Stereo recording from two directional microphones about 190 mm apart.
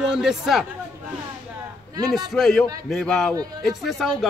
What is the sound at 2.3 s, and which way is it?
A man's voice, centre (ahead or behind).